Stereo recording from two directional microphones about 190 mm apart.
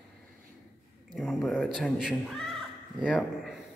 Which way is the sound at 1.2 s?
Centre (ahead or behind).